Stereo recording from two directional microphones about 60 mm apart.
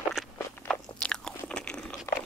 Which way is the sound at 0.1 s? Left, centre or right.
Centre.